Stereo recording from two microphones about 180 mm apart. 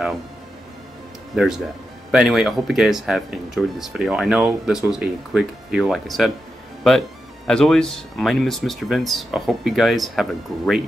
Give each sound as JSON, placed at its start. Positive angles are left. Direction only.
{"t": 1.3, "sound": "speech", "side_deg": 0}
{"t": 7.4, "sound": "speech", "side_deg": 5}